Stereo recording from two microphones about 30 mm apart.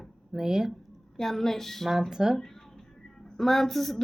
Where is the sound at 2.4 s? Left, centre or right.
Centre.